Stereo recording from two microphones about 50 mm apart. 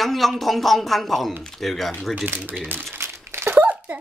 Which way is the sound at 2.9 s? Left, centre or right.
Right.